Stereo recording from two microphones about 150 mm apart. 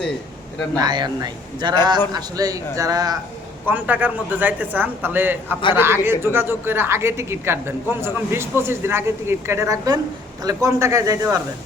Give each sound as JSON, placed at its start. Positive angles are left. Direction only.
{"t": 0.8, "sound": "speech", "side_deg": -30}
{"t": 3.7, "sound": "speech", "side_deg": -10}